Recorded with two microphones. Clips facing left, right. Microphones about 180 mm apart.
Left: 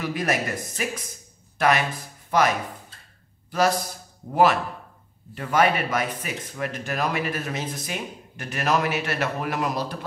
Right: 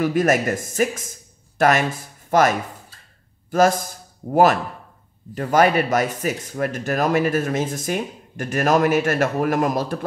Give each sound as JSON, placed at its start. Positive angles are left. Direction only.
{"t": 0.0, "sound": "a man's voice", "side_deg": -45}